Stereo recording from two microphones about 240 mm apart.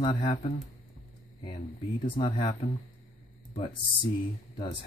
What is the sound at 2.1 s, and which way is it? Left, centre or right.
Speech, left.